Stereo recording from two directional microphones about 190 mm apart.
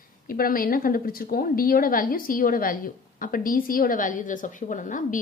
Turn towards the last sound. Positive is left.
turn(degrees=45)  # may be behind; listen again after turning